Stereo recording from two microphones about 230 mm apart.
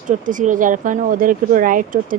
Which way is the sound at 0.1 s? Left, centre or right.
Right.